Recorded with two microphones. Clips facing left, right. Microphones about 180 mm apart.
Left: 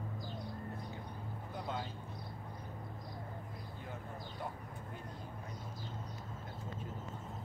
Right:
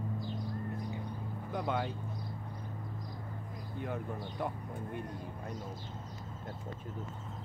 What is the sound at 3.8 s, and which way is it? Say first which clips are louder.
Speech: right 10 dB; 65° right (ahead or behind).